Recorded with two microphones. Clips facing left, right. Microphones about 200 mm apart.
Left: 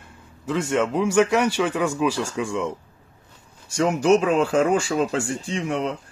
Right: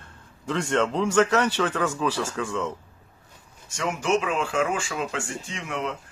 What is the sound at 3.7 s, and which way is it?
Speech, 40° left (ahead or behind).